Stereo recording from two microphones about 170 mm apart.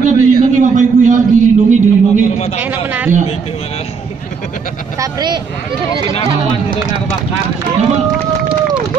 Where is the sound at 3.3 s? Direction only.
40° left (ahead or behind).